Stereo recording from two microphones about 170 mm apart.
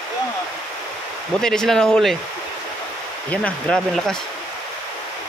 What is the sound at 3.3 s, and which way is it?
Speech, 5° left (ahead or behind).